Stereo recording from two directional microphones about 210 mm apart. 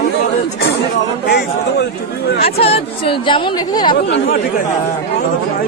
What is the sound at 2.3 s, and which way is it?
Speech, 30° left (ahead or behind).